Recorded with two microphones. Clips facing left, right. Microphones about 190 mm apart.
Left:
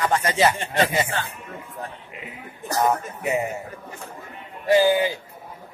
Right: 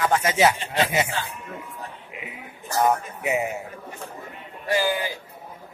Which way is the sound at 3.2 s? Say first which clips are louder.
Left 1 dB; 10° right (ahead or behind).